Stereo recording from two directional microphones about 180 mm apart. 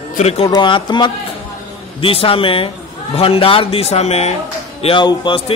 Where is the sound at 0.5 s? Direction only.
25° left (ahead or behind).